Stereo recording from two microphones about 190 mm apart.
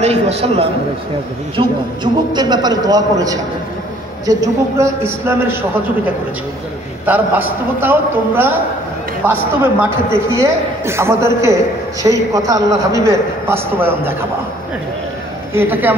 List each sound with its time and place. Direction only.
0.0 s a man's voice: 35° right (ahead or behind); by 5.6 s 15° right (ahead or behind)
7.1 s a man's voice: 10° right (ahead or behind)
15.5 s a man's voice: 10° right (ahead or behind)